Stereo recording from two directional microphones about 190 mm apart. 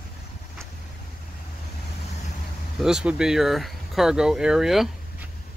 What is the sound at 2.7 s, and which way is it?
Speech, 5° right (ahead or behind).